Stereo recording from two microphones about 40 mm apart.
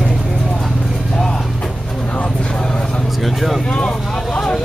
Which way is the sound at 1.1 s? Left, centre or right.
Centre.